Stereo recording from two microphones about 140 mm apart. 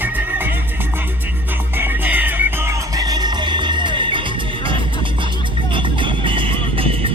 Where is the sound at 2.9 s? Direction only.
30° right (ahead or behind).